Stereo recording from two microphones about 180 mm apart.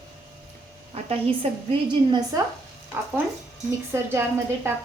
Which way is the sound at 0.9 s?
30° right (ahead or behind).